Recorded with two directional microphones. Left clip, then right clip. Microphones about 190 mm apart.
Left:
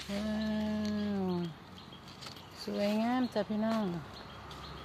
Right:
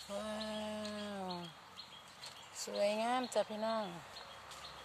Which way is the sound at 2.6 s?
20° right (ahead or behind).